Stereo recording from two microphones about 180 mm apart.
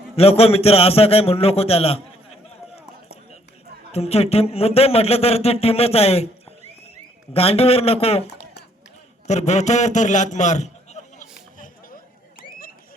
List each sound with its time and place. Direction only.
0.2 s a man's voice: 35° left (ahead or behind)
3.9 s a man's voice: 35° left (ahead or behind)
7.3 s a man's voice: 35° left (ahead or behind)
9.2 s a man's voice: 40° left (ahead or behind)
11.3 s a sound: 50° left (ahead or behind)